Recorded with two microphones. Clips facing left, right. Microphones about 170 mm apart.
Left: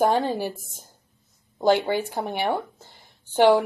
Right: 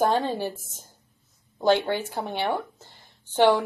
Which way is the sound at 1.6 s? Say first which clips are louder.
Left 1 dB; 15° left (ahead or behind).